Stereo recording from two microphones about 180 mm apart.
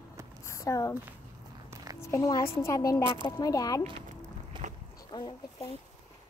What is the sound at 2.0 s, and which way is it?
A woman's voice, 15° left (ahead or behind).